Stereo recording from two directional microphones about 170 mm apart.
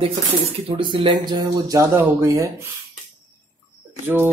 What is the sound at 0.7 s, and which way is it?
Speech, 30° right (ahead or behind).